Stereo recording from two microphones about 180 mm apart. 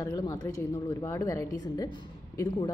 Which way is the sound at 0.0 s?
20° left (ahead or behind).